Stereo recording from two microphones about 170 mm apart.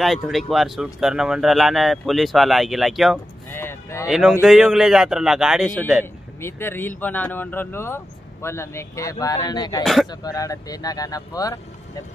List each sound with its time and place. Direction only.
0.0 s speech: centre (ahead or behind)
3.5 s a sound: 15° left (ahead or behind)
4.1 s speech: 5° right (ahead or behind)
6.4 s speech: 15° left (ahead or behind)